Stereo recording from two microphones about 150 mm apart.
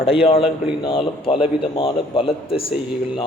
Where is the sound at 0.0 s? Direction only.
40° left (ahead or behind).